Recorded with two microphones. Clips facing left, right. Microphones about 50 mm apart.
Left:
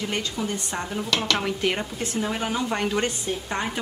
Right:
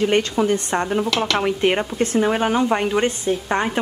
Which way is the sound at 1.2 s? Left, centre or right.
Centre.